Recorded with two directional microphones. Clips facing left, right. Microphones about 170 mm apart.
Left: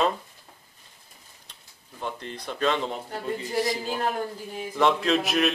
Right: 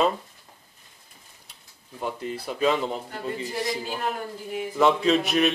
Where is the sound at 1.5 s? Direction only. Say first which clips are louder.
Right 5 dB; 10° right (ahead or behind).